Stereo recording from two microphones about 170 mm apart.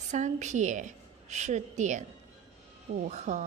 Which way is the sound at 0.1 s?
45° right (ahead or behind).